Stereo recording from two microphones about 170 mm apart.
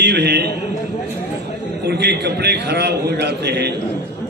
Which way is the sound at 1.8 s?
75° right (ahead or behind).